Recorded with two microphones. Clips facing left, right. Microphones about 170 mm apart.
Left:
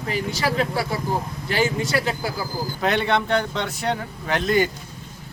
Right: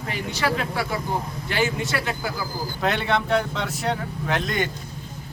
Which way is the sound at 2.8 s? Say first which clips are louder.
Left 2 dB; centre (ahead or behind).